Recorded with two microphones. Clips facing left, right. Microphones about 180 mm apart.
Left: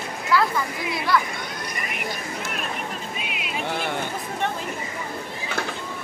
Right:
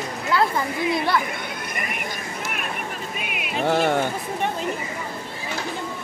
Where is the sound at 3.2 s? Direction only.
55° right (ahead or behind).